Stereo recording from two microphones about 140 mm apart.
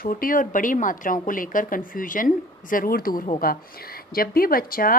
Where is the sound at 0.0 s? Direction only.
85° left.